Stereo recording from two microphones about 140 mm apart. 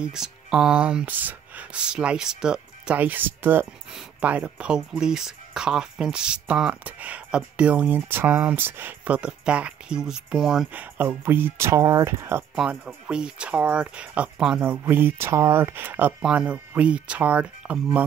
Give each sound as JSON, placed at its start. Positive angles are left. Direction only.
{"t": 0.0, "sound": "speech", "side_deg": -5}
{"t": 10.7, "sound": "speech", "side_deg": -10}
{"t": 12.5, "sound": "speech", "side_deg": -5}